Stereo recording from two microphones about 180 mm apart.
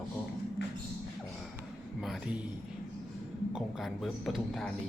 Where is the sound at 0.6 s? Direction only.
75° left (ahead or behind).